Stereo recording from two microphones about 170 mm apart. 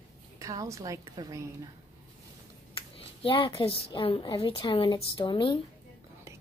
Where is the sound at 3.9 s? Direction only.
30° left (ahead or behind).